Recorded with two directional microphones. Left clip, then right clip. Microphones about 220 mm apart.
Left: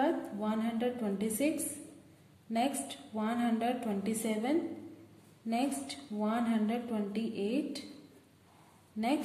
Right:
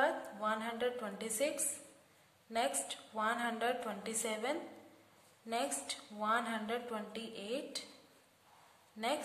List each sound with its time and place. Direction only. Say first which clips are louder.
0.0 s a woman's voice: left 2 dB; 20° right (ahead or behind)
2.5 s a woman's voice: left 3 dB; 20° right (ahead or behind)